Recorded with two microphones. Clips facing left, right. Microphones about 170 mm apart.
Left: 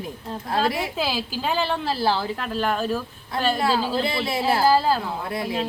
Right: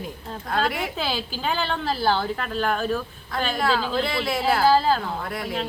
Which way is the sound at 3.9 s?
25° left (ahead or behind).